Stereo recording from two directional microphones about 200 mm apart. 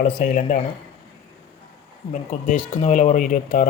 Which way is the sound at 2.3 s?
40° left (ahead or behind).